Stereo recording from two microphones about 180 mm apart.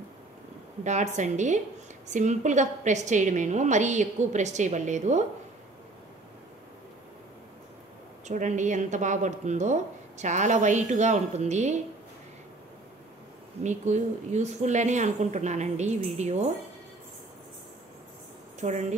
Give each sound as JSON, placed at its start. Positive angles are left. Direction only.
{"t": 0.8, "sound": "speech", "side_deg": -40}
{"t": 8.3, "sound": "speech", "side_deg": -40}
{"t": 13.6, "sound": "speech", "side_deg": -40}
{"t": 18.6, "sound": "speech", "side_deg": -40}